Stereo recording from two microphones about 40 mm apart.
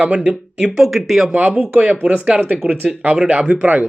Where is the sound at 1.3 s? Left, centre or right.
Right.